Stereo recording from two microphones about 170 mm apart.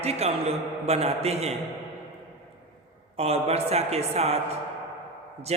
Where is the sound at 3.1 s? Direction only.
35° right (ahead or behind).